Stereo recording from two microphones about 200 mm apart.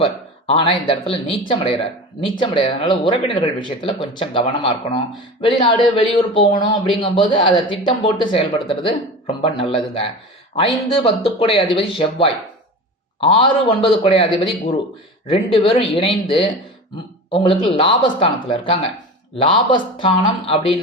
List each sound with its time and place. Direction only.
0.0 s speech: 30° left (ahead or behind)